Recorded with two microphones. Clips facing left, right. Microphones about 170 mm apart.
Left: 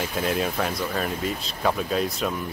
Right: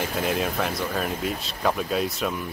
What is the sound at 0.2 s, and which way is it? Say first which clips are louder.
Speech: left 1 dB; 5° right (ahead or behind).